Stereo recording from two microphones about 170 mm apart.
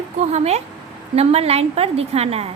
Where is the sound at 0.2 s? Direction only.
40° right (ahead or behind).